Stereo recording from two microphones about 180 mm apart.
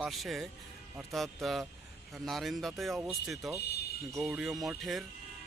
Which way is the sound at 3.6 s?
65° left (ahead or behind).